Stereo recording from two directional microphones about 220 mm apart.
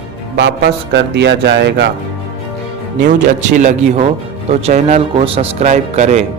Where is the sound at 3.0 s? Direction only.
35° right (ahead or behind).